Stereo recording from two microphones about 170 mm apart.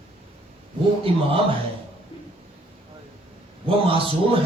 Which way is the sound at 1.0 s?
35° right (ahead or behind).